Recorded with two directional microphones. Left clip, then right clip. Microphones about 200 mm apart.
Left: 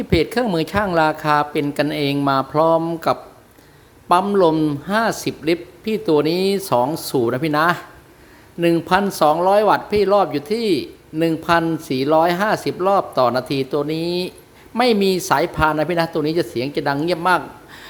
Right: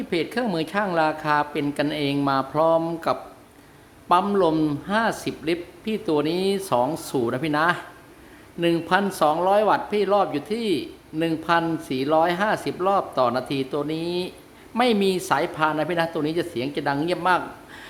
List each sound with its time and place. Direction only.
0.1 s speech: 25° left (ahead or behind)